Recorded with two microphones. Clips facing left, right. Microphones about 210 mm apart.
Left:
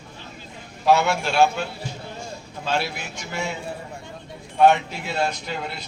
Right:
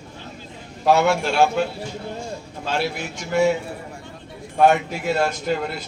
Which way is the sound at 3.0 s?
50° right (ahead or behind).